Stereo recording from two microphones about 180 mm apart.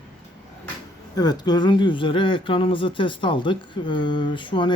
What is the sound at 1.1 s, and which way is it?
Speech, 20° left (ahead or behind).